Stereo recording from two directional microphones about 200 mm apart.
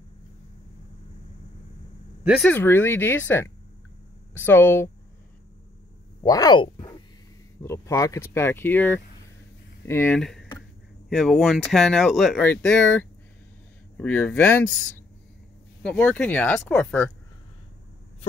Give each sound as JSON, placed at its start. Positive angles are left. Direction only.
{"t": 2.4, "sound": "speech", "side_deg": 10}
{"t": 6.2, "sound": "speech", "side_deg": 20}